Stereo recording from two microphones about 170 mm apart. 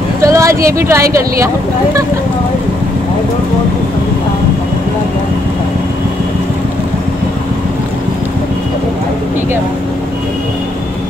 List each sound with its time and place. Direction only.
0.2 s vehicle: 15° right (ahead or behind)
0.7 s speech: 15° right (ahead or behind)